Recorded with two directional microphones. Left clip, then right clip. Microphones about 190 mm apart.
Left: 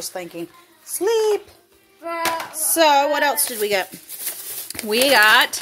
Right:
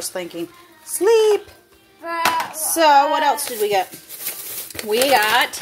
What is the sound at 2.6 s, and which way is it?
A woman's voice, 20° left (ahead or behind).